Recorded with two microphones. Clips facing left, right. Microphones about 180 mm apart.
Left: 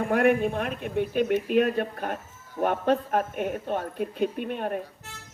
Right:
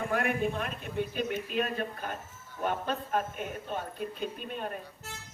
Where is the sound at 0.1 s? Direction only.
60° left (ahead or behind).